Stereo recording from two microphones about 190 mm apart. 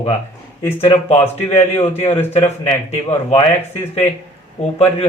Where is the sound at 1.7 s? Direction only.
35° left (ahead or behind).